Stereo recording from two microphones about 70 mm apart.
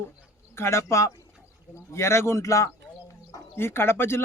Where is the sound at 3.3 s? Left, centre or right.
Left.